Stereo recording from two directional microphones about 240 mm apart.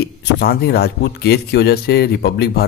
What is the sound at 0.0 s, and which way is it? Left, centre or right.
Speech, left.